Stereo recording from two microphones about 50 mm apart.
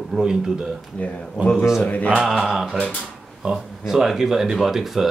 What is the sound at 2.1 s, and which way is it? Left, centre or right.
Speech, centre.